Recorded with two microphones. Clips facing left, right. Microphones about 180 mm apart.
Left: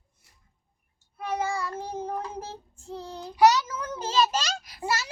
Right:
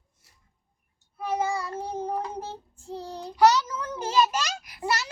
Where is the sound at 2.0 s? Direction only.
35° right (ahead or behind).